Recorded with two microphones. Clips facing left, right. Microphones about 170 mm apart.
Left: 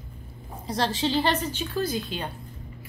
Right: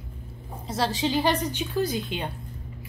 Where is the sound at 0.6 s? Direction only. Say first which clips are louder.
Even; 5° right (ahead or behind).